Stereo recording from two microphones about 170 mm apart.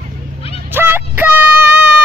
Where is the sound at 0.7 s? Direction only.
10° right (ahead or behind).